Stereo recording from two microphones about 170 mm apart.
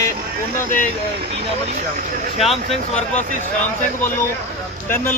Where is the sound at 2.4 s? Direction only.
Centre (ahead or behind).